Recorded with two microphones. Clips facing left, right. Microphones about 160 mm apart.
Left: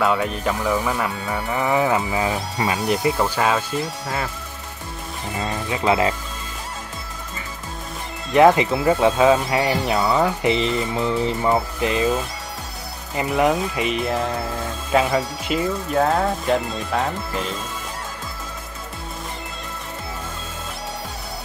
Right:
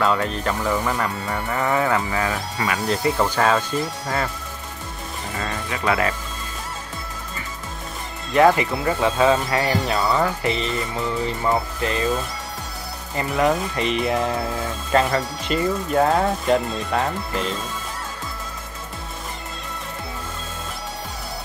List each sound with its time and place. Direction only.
0.0 s speech: 10° left (ahead or behind)
5.4 s speech: 20° left (ahead or behind)
8.3 s speech: 20° left (ahead or behind)
13.1 s speech: 15° left (ahead or behind)